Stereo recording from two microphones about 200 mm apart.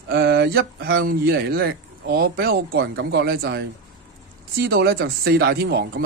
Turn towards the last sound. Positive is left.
turn(degrees=-50)  # may be behind; listen again after turning